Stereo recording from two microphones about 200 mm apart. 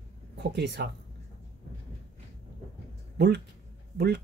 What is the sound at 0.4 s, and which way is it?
Speech, 55° right (ahead or behind).